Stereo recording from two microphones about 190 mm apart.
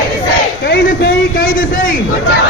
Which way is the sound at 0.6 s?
55° left (ahead or behind).